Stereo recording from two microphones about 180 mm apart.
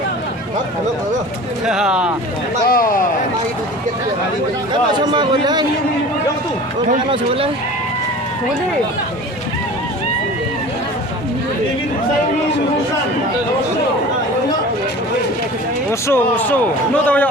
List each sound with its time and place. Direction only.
1.6 s speech: 5° right (ahead or behind)
2.6 s a man's voice: 50° left (ahead or behind)
4.7 s speech: 25° right (ahead or behind)
7.1 s speech: 30° right (ahead or behind)
15.9 s speech: 15° left (ahead or behind)